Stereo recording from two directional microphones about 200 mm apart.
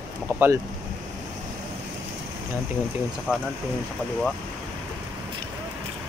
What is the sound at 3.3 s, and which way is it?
Speech, 10° left (ahead or behind).